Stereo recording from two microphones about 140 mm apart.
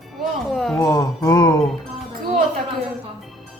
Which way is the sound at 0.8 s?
25° left (ahead or behind).